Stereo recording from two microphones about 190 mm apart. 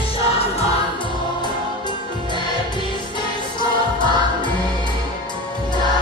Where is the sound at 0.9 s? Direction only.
25° left (ahead or behind).